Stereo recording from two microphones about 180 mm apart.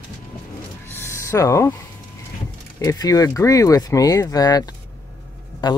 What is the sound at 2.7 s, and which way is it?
Speech, 20° left (ahead or behind).